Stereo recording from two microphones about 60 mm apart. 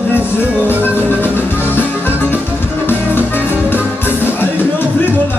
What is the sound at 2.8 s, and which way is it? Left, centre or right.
Music, left.